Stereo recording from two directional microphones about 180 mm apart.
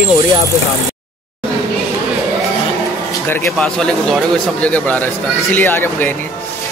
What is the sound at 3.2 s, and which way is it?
Speech, 10° left (ahead or behind).